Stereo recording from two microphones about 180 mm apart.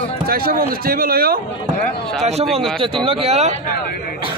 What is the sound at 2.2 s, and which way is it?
Speech, 35° right (ahead or behind).